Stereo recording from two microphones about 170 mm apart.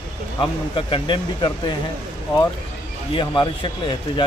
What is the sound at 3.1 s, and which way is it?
Speech, 30° left (ahead or behind).